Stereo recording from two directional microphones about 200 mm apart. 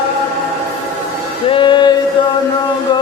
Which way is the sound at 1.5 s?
25° left (ahead or behind).